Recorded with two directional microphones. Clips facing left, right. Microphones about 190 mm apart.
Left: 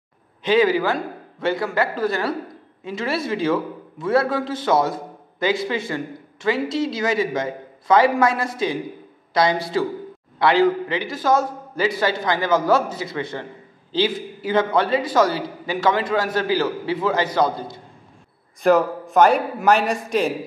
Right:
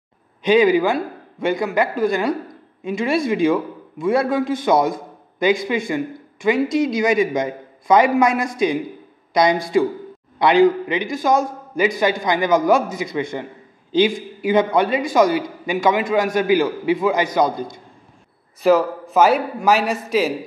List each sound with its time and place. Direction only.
0.4 s a man's voice: 15° right (ahead or behind)
18.6 s a man's voice: centre (ahead or behind)